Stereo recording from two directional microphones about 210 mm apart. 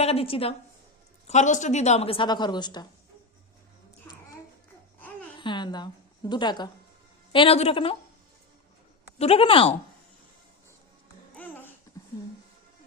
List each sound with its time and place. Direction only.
0.0 s a woman's voice: 30° left (ahead or behind)
4.1 s babbling: 10° left (ahead or behind)
5.4 s a woman's voice: 20° left (ahead or behind)
9.1 s a woman's voice: 30° left (ahead or behind)
11.3 s babbling: 10° left (ahead or behind)
11.9 s a sound: 15° left (ahead or behind)